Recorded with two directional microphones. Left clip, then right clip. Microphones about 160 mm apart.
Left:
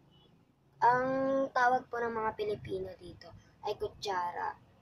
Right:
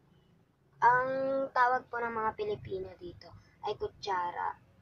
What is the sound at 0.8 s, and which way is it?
A woman's voice, 15° left (ahead or behind).